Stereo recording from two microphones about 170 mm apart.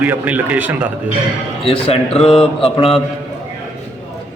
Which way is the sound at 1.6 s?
35° left (ahead or behind).